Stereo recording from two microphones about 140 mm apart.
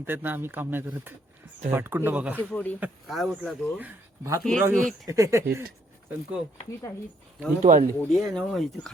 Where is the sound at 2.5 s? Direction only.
10° left (ahead or behind).